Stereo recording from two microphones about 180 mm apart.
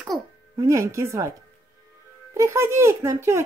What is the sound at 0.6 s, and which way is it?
Speech, 15° right (ahead or behind).